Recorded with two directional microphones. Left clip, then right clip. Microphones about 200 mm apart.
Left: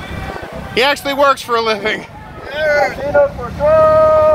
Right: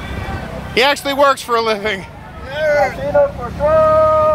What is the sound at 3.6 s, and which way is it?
Boat, 45° left (ahead or behind).